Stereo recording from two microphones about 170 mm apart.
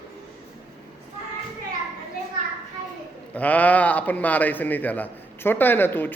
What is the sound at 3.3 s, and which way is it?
A man's voice, 10° left (ahead or behind).